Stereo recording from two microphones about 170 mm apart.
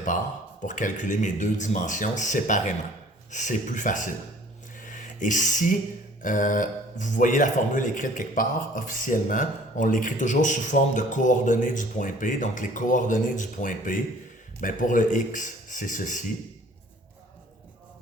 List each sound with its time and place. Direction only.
0.6 s a man's voice: 50° left (ahead or behind)
4.8 s a sound: 50° left (ahead or behind)
6.2 s a man's voice: 50° left (ahead or behind)